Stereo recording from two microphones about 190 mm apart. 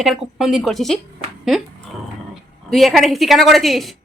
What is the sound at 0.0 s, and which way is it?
Speech, centre (ahead or behind).